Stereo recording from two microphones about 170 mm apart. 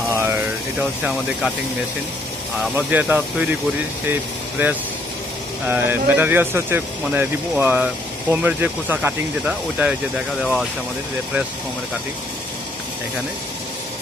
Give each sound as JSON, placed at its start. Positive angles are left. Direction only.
{"t": 0.1, "sound": "a sound", "side_deg": -15}
{"t": 0.7, "sound": "speech", "side_deg": -5}
{"t": 2.7, "sound": "speech", "side_deg": -10}